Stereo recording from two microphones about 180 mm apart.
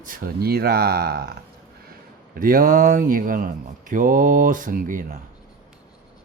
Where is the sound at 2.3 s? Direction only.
50° right (ahead or behind).